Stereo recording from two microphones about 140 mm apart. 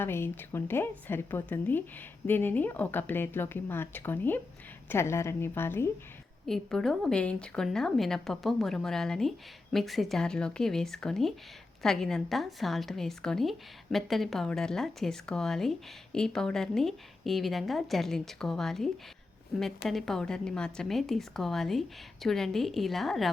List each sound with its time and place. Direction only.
0.0 s speech: 15° left (ahead or behind)
6.4 s a woman's voice: 5° left (ahead or behind)